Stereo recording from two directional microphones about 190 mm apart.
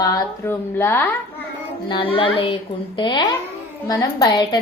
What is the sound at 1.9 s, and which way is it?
A woman's voice, 30° left (ahead or behind).